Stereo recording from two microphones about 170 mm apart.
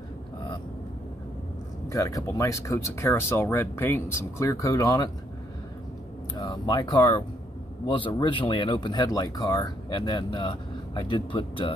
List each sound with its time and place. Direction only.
1.9 s speech: 20° left (ahead or behind)
6.3 s speech: 25° left (ahead or behind)